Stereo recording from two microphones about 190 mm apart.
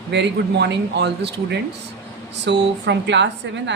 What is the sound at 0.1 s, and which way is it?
A woman's voice, 65° right (ahead or behind).